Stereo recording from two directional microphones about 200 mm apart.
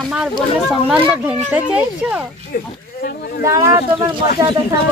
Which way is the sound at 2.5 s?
50° left (ahead or behind).